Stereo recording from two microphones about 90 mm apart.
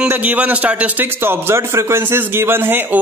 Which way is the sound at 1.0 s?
25° right (ahead or behind).